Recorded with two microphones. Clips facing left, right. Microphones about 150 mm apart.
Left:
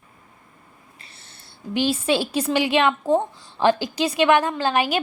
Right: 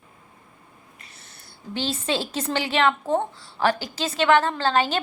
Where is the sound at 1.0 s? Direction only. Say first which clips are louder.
Even; 30° left (ahead or behind).